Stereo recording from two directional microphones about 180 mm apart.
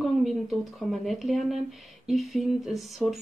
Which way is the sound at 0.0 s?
Centre (ahead or behind).